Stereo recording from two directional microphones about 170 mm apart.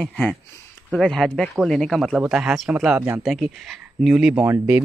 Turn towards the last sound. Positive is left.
turn(degrees=-10)  # may be behind; listen again after turning